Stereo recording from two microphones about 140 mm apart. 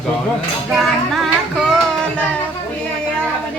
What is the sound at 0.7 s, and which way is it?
Child singing, centre (ahead or behind).